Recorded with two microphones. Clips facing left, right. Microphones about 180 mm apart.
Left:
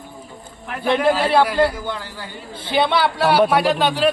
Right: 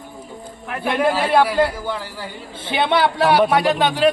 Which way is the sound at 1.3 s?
10° right (ahead or behind).